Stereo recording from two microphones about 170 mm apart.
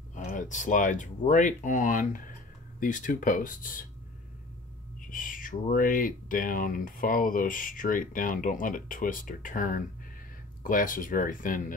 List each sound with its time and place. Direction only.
0.1 s speech: 50° left (ahead or behind)
5.1 s speech: 50° left (ahead or behind)